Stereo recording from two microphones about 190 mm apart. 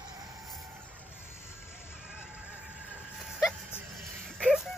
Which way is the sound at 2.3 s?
5° right (ahead or behind).